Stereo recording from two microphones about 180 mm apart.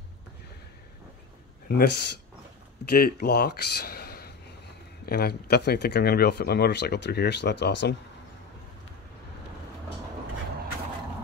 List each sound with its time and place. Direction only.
1.7 s speech: 65° left (ahead or behind)